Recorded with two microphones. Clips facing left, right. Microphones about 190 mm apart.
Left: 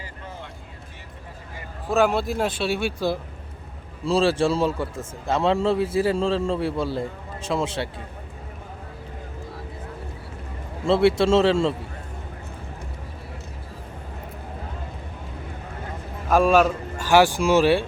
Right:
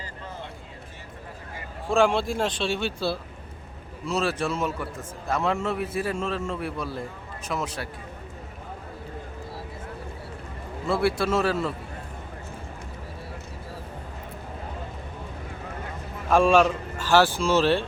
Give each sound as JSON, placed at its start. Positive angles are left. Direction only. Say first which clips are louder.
{"t": 1.9, "sound": "speech", "louder": "left 1 dB", "side_deg": 5}
{"t": 4.0, "sound": "a man's voice", "louder": "left 6 dB", "side_deg": 30}
{"t": 10.8, "sound": "a man's voice", "louder": "left 6 dB", "side_deg": 25}
{"t": 16.3, "sound": "a man's voice", "louder": "left 1 dB", "side_deg": 5}